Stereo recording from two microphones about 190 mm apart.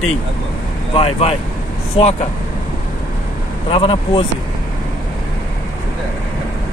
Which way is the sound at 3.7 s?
25° left (ahead or behind).